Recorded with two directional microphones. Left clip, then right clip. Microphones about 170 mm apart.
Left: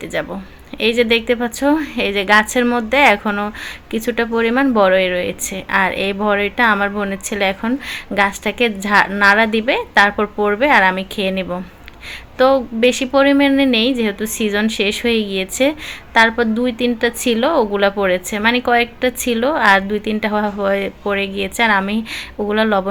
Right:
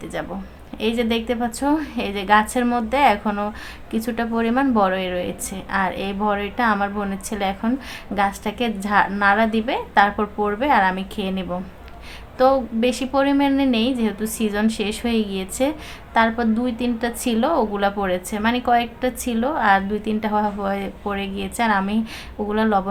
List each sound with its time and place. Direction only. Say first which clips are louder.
0.8 s a woman's voice: left 8 dB; 20° left (ahead or behind)